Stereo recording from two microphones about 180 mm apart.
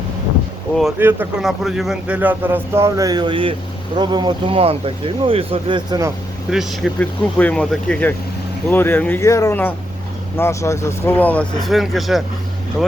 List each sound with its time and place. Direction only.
0.9 s speech: 10° right (ahead or behind)
1.4 s speech: centre (ahead or behind); by 6.1 s 20° right (ahead or behind)
6.5 s speech: centre (ahead or behind)